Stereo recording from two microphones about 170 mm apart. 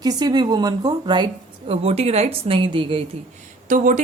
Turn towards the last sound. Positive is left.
turn(degrees=-45)  # may be behind; listen again after turning